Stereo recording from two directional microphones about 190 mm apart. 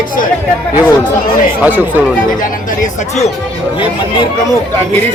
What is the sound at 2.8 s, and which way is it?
Speech, 35° left (ahead or behind).